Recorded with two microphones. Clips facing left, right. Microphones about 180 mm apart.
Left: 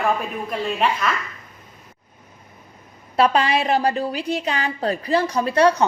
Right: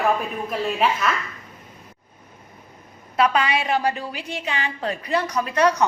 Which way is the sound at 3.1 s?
35° left (ahead or behind).